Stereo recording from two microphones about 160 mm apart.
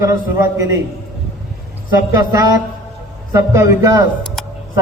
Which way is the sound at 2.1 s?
15° right (ahead or behind).